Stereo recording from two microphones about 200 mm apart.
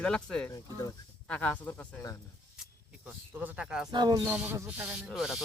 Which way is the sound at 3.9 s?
20° right (ahead or behind).